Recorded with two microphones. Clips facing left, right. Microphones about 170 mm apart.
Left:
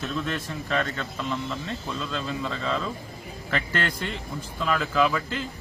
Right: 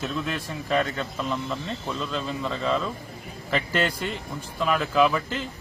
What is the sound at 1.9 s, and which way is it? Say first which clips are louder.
A man's voice: right 2 dB; 5° right (ahead or behind).